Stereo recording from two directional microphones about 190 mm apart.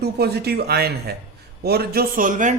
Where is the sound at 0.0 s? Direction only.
55° right (ahead or behind).